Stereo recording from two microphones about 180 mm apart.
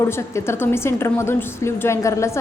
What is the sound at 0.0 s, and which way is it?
A woman's voice, 15° left (ahead or behind).